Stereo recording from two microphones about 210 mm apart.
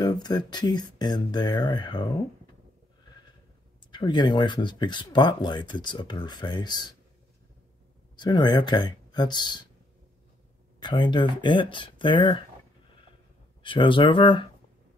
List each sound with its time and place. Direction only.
0.0 s speech: 20° left (ahead or behind)
3.9 s speech: 20° left (ahead or behind)
8.2 s speech: 20° left (ahead or behind)
10.8 s speech: 20° left (ahead or behind)
13.6 s speech: 25° left (ahead or behind)